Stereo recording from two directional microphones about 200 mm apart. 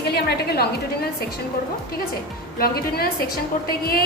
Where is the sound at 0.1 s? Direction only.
50° left (ahead or behind).